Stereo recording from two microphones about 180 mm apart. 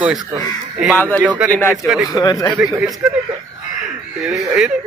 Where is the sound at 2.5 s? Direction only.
Centre (ahead or behind).